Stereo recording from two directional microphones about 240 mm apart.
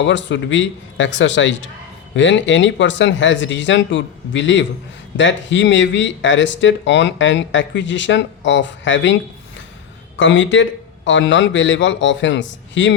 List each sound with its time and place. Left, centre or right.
0.0 s speech: left
10.2 s speech: left